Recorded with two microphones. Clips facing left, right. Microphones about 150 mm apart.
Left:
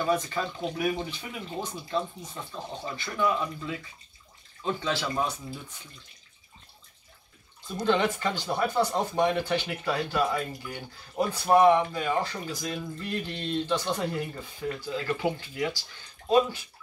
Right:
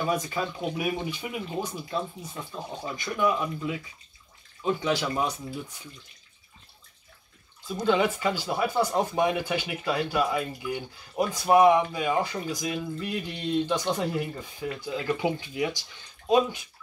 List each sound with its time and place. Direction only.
0.0 s speech: 10° right (ahead or behind)
7.6 s speech: 5° right (ahead or behind)